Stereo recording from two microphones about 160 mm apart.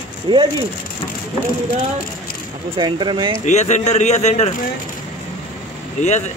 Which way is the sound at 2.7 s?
30° right (ahead or behind).